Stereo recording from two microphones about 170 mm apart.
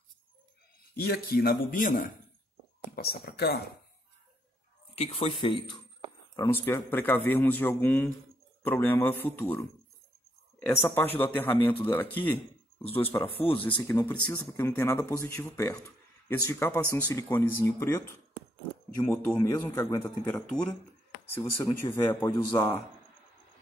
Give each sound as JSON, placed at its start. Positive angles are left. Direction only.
{"t": 0.9, "sound": "a man's voice", "side_deg": 65}
{"t": 3.0, "sound": "speech", "side_deg": 70}
{"t": 4.9, "sound": "speech", "side_deg": 35}
{"t": 6.3, "sound": "speech", "side_deg": 15}
{"t": 20.4, "sound": "speech", "side_deg": 5}